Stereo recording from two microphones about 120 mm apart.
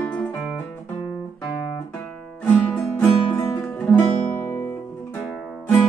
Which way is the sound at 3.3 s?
30° left (ahead or behind).